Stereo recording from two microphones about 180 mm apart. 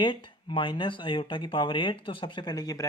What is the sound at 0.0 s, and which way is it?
Speech, 25° left (ahead or behind).